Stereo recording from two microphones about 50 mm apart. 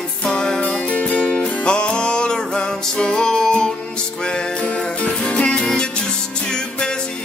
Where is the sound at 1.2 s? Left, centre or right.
Centre.